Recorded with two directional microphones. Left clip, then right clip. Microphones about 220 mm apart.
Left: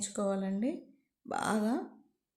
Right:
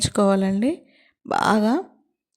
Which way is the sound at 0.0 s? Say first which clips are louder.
Right 14 dB; 45° right (ahead or behind).